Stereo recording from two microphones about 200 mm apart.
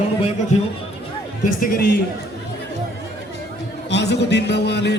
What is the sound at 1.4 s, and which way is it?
Speech, 45° left (ahead or behind).